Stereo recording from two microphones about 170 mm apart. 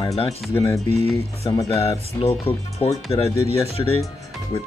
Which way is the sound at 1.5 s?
20° left (ahead or behind).